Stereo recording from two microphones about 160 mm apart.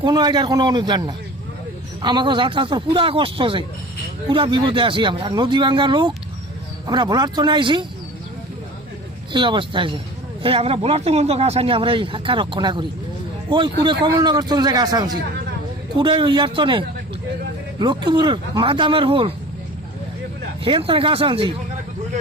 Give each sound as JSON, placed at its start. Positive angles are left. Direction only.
{"t": 0.0, "sound": "a man's voice", "side_deg": -25}
{"t": 9.3, "sound": "a man's voice", "side_deg": -30}
{"t": 20.7, "sound": "speech", "side_deg": -35}